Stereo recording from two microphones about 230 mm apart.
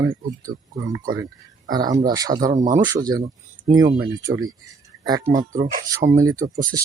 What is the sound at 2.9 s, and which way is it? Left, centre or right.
Speech, centre.